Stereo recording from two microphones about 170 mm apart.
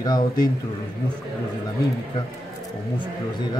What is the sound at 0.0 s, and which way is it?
Speech, 25° left (ahead or behind).